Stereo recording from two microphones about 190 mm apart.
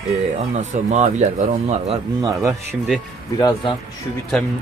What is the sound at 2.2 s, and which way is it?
Speech, 15° right (ahead or behind).